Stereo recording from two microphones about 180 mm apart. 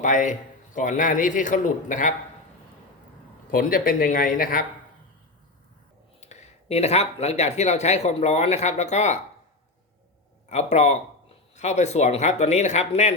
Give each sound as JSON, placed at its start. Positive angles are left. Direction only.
{"t": 0.0, "sound": "a man's voice", "side_deg": 45}
{"t": 3.5, "sound": "a man's voice", "side_deg": 50}
{"t": 6.1, "sound": "speech", "side_deg": 40}
{"t": 10.5, "sound": "speech", "side_deg": 40}